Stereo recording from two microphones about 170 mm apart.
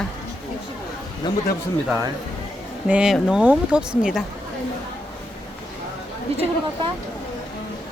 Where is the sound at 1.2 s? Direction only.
25° left (ahead or behind).